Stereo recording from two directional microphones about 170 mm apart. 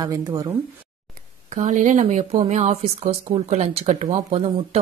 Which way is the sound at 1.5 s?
45° right (ahead or behind).